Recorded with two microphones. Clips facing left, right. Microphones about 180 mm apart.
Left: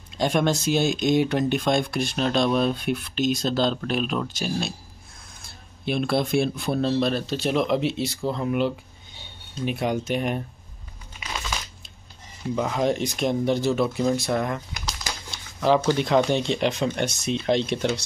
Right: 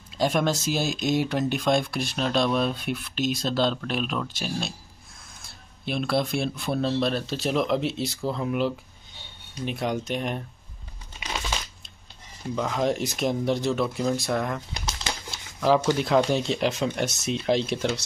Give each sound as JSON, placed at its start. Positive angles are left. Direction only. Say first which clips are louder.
{"t": 0.2, "sound": "speech", "louder": "left 2 dB", "side_deg": 0}
{"t": 12.5, "sound": "speech", "louder": "left 2 dB", "side_deg": 5}
{"t": 14.7, "sound": "bird", "louder": "right 1 dB", "side_deg": -25}
{"t": 15.3, "sound": "speech", "louder": "left 1 dB", "side_deg": 0}